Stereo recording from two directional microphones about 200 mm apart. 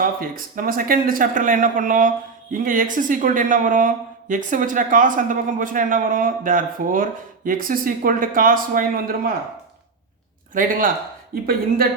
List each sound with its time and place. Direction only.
0.0 s a man's voice: 45° right (ahead or behind)
10.5 s speech: 40° right (ahead or behind)